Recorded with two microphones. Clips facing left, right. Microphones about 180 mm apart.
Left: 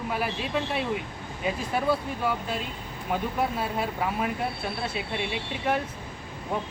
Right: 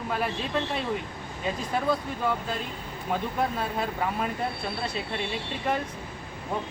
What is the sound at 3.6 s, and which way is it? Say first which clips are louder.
Speech: even; 5° left (ahead or behind).